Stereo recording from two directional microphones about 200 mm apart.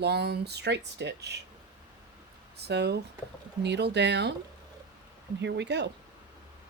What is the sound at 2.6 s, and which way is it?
Speech, 55° right (ahead or behind).